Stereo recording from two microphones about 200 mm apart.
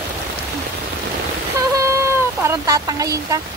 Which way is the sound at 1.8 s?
15° right (ahead or behind).